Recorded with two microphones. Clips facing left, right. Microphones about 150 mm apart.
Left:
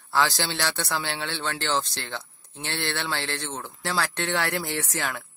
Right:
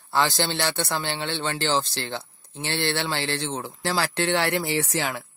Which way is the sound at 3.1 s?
10° right (ahead or behind).